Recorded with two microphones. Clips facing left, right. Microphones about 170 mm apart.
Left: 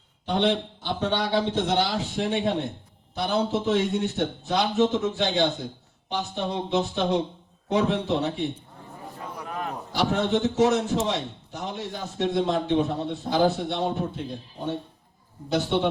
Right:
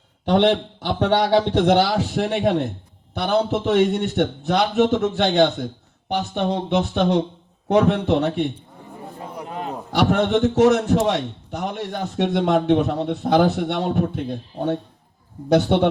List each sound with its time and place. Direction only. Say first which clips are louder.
0.3 s a man's voice: right 6 dB; 70° right (ahead or behind)
9.1 s a sound: right 3 dB; 25° right (ahead or behind)
9.9 s a man's voice: right 6 dB; 65° right (ahead or behind)
15.4 s a man's voice: right 7 dB; 65° right (ahead or behind)